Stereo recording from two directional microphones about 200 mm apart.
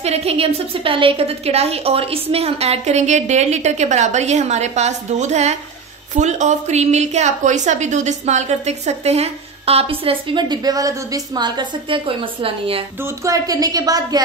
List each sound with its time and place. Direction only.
0.0 s a woman's voice: 30° right (ahead or behind)
13.0 s a woman's voice: 15° right (ahead or behind)